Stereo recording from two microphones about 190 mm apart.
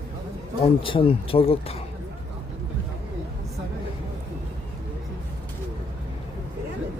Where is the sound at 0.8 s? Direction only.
30° left (ahead or behind).